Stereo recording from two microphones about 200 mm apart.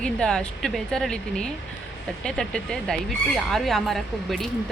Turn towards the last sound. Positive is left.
turn(degrees=0)  # may be behind; listen again after turning